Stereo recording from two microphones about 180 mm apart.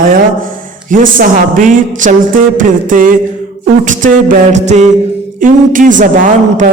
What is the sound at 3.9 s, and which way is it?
A capella, 45° right (ahead or behind).